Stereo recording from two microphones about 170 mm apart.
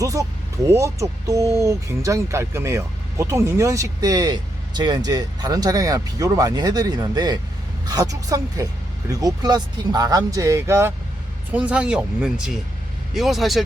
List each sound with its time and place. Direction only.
0.0 s speech: 20° right (ahead or behind); by 13.7 s centre (ahead or behind)